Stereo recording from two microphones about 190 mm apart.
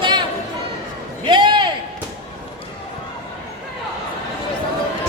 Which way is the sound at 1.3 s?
25° right (ahead or behind).